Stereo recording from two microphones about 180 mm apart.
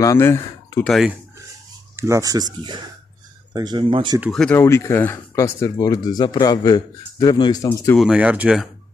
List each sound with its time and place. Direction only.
0.0 s speech: 15° left (ahead or behind)
0.8 s speech: centre (ahead or behind)
2.0 s speech: 15° right (ahead or behind)
4.2 s speech: centre (ahead or behind)
8.0 s speech: 5° right (ahead or behind)